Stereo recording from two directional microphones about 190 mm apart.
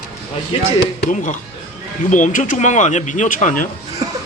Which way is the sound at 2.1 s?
40° left (ahead or behind).